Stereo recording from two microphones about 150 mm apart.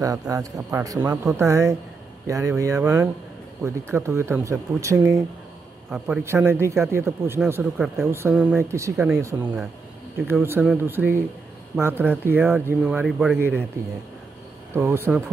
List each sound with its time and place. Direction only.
0.0 s a man's voice: 25° right (ahead or behind)
5.9 s speech: 5° right (ahead or behind)
6.2 s a man's voice: 15° right (ahead or behind)
14.7 s speech: 15° right (ahead or behind)